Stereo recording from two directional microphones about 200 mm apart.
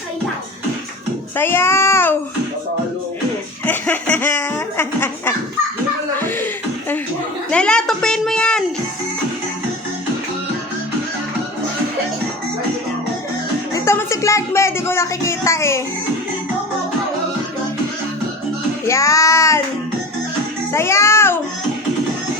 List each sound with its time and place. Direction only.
1.4 s child singing: 10° left (ahead or behind)
3.7 s snicker: 10° left (ahead or behind)
7.5 s a sound: 5° left (ahead or behind)
13.7 s music: 15° left (ahead or behind)
18.9 s child singing: 15° left (ahead or behind)
20.7 s music: 15° left (ahead or behind)